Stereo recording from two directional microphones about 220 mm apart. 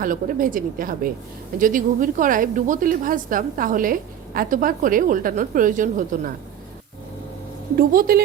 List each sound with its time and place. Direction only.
0.0 s a woman's voice: 40° right (ahead or behind)
7.8 s a woman's voice: 40° right (ahead or behind)